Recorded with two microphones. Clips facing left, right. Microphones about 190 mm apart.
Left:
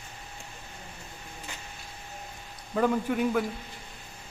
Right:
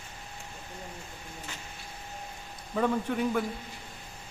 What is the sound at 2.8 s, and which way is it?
Speech, 5° left (ahead or behind).